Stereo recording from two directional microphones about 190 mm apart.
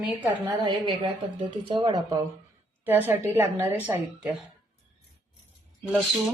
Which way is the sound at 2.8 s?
10° right (ahead or behind).